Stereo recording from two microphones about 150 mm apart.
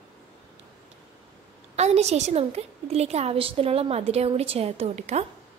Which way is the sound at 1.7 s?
45° right (ahead or behind).